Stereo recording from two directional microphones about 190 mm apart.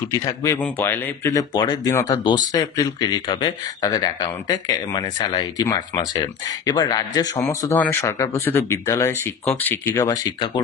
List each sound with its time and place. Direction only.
0.1 s speech: 15° left (ahead or behind)